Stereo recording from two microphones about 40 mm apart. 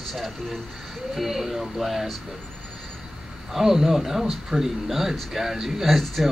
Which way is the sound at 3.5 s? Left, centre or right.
Centre.